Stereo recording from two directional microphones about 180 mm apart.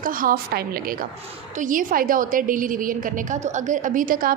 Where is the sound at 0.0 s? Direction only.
50° right (ahead or behind).